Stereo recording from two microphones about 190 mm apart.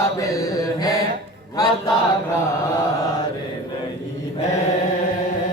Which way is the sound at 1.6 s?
20° left (ahead or behind).